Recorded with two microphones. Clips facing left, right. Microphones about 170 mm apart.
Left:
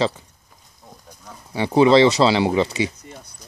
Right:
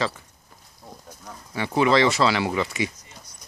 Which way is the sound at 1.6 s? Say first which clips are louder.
Left 6 dB; 30° left (ahead or behind).